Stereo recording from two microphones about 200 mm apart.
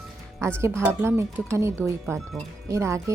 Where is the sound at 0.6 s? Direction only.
15° right (ahead or behind).